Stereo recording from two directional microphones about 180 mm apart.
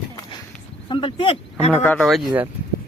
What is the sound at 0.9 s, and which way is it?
Speech, 30° left (ahead or behind).